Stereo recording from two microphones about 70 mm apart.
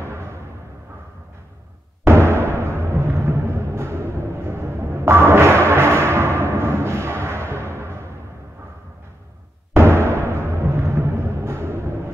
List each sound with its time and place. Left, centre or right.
0.0 s timpani: right
2.0 s music: right
9.8 s music: right